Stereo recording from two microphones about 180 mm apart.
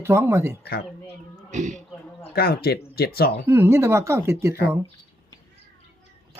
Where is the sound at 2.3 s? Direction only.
55° left (ahead or behind).